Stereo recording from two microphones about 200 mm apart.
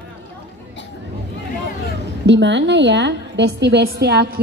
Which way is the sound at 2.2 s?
60° right (ahead or behind).